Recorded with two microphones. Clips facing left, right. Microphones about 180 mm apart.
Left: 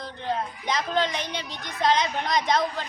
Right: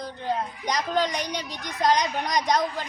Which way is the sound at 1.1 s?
40° right (ahead or behind).